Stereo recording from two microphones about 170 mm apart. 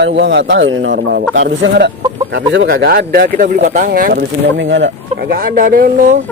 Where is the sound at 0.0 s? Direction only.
90° right.